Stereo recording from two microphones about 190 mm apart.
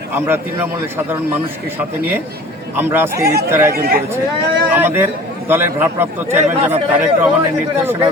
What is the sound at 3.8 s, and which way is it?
Speech, 55° right (ahead or behind).